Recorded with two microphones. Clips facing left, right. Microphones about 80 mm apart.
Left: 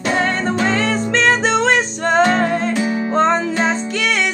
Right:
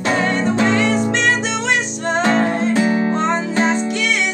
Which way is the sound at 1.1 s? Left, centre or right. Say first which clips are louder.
Left 3 dB; left.